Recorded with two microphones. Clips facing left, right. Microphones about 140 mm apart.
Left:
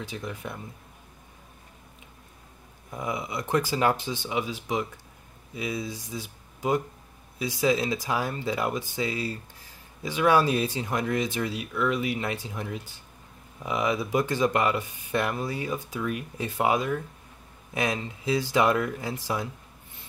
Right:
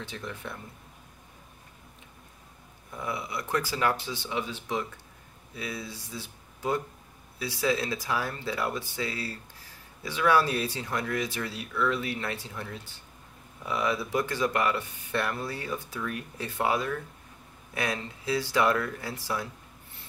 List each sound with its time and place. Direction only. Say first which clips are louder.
0.0 s speech: left 3 dB; 10° left (ahead or behind)
2.9 s speech: left 3 dB; 15° left (ahead or behind)